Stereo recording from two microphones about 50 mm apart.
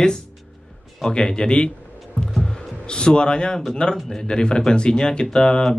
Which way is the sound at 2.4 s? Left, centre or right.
Centre.